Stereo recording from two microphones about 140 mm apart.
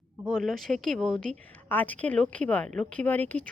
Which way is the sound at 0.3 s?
5° left (ahead or behind).